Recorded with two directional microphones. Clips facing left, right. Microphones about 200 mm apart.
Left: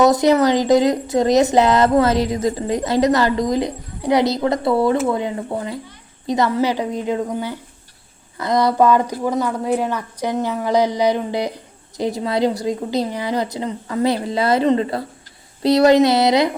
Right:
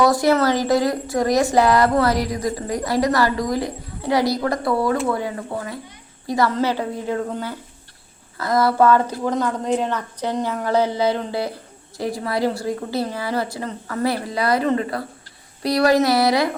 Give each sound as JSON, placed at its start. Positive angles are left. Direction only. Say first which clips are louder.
{"t": 0.0, "sound": "a woman's voice", "louder": "left 3 dB", "side_deg": 20}